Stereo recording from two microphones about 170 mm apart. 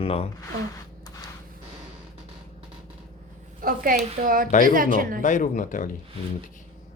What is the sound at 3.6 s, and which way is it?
A woman's voice, 60° right (ahead or behind).